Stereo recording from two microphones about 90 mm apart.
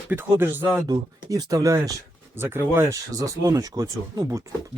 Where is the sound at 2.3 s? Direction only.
25° right (ahead or behind).